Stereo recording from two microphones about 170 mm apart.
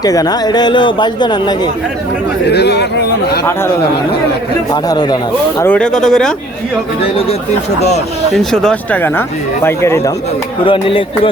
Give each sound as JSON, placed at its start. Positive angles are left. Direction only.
{"t": 0.0, "sound": "speech", "side_deg": 20}
{"t": 2.5, "sound": "speech", "side_deg": 80}
{"t": 4.7, "sound": "speech", "side_deg": 25}
{"t": 5.6, "sound": "speech", "side_deg": 5}
{"t": 8.3, "sound": "speech", "side_deg": 5}
{"t": 10.7, "sound": "speech", "side_deg": 30}